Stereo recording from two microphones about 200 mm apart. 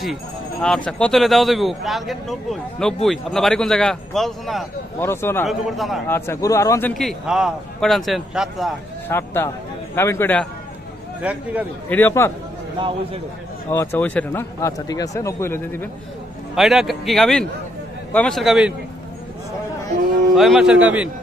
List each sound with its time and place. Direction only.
0.0 s speech: centre (ahead or behind)
5.0 s speech: 10° left (ahead or behind)
5.5 s speech: centre (ahead or behind)
6.0 s speech: 10° left (ahead or behind)
7.0 s speech: centre (ahead or behind)
9.1 s speech: 10° left (ahead or behind)
11.3 s speech: 5° right (ahead or behind)
11.9 s speech: 10° left (ahead or behind)
12.7 s a man's voice: 25° right (ahead or behind)
13.7 s speech: 10° left (ahead or behind)
16.5 s speech: centre (ahead or behind)
20.3 s speech: centre (ahead or behind)